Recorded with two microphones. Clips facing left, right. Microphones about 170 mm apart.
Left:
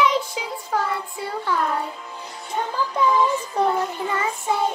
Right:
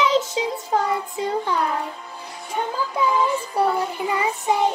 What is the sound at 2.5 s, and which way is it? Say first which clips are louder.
Music: even; 10° right (ahead or behind).